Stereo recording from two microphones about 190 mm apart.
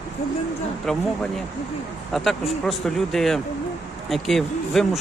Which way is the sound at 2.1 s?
Centre (ahead or behind).